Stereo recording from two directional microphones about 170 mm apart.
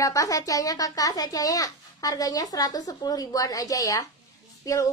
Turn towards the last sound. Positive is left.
turn(degrees=20)  # may be behind; listen again after turning